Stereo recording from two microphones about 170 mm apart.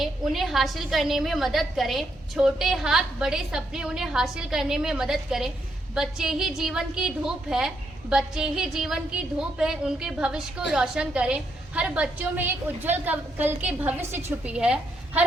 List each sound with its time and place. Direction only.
0.0 s a woman's voice: centre (ahead or behind)